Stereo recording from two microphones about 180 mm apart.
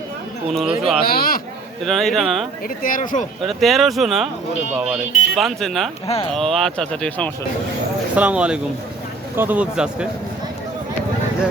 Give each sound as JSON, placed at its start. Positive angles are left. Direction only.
{"t": 0.5, "sound": "speech", "side_deg": -5}
{"t": 1.0, "sound": "a man's voice", "side_deg": 55}
{"t": 1.8, "sound": "speech", "side_deg": 0}
{"t": 2.6, "sound": "speech", "side_deg": 50}
{"t": 3.4, "sound": "speech", "side_deg": 0}
{"t": 6.1, "sound": "speech", "side_deg": 35}
{"t": 6.3, "sound": "speech", "side_deg": 0}
{"t": 8.1, "sound": "speech", "side_deg": -5}